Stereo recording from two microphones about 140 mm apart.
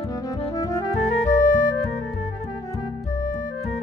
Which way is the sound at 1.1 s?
65° left (ahead or behind).